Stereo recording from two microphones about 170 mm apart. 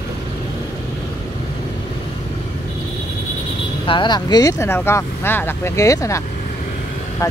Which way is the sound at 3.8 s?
30° left (ahead or behind).